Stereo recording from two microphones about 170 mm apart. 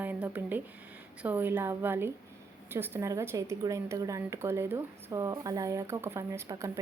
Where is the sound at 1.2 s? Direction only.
10° right (ahead or behind).